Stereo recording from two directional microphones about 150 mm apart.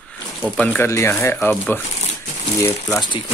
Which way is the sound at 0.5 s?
10° left (ahead or behind).